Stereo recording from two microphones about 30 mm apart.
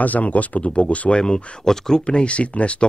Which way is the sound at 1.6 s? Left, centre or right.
Centre.